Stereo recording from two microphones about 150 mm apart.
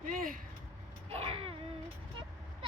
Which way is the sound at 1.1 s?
40° right (ahead or behind).